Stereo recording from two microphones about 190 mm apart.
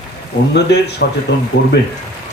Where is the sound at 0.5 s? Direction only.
60° left (ahead or behind).